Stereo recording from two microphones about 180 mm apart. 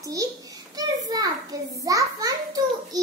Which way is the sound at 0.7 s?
20° right (ahead or behind).